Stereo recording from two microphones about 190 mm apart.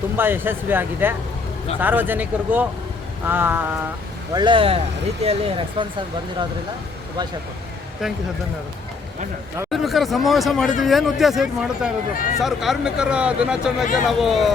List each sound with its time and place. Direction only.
0.2 s speech: 10° right (ahead or behind)
4.4 s speech: 25° right (ahead or behind)
9.6 s speech: centre (ahead or behind)
12.1 s speech: 45° left (ahead or behind)
12.4 s speech: centre (ahead or behind)